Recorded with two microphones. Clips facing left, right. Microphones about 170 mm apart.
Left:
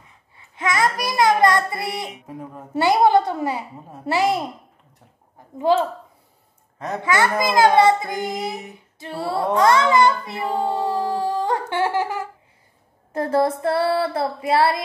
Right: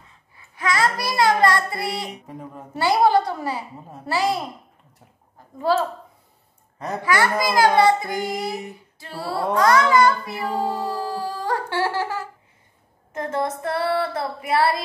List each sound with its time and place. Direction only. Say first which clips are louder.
0.0 s babbling: even; 20° left (ahead or behind)
2.7 s female singing: left 2 dB; 20° left (ahead or behind)
5.6 s a woman's voice: left 3 dB; 15° left (ahead or behind)
7.0 s female singing: left 1 dB; 20° left (ahead or behind)
10.7 s music: left 4 dB; 20° left (ahead or behind)
13.1 s female singing: left 6 dB; 35° left (ahead or behind)